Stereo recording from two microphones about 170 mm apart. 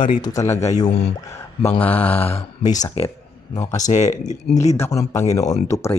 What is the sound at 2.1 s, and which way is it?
Speech, 35° left (ahead or behind).